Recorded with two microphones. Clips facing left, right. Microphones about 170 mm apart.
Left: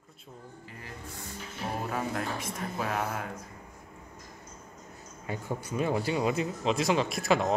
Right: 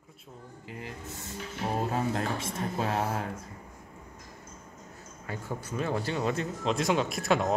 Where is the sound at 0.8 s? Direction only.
25° right (ahead or behind).